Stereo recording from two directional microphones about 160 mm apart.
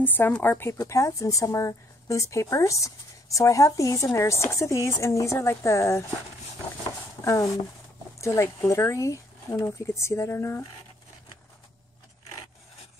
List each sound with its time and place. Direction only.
0.0 s speech: 10° left (ahead or behind)
7.2 s speech: 20° left (ahead or behind)